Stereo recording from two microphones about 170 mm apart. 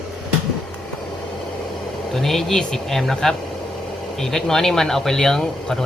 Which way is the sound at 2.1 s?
Centre (ahead or behind).